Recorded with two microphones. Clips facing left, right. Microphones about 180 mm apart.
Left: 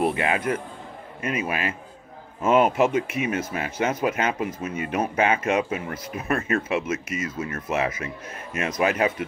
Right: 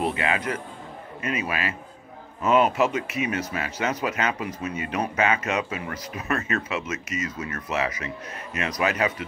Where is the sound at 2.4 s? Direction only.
50° left (ahead or behind).